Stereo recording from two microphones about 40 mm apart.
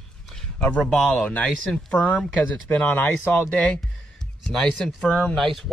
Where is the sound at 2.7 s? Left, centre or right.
Left.